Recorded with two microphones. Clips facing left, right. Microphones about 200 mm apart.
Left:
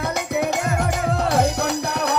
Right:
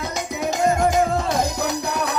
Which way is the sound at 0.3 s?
65° left (ahead or behind).